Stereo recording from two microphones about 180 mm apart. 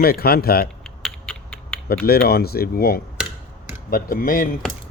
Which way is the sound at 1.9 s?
60° left (ahead or behind).